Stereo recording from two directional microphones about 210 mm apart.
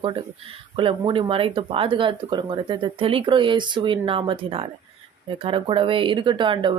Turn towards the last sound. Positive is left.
turn(degrees=-20)  # may be behind; listen again after turning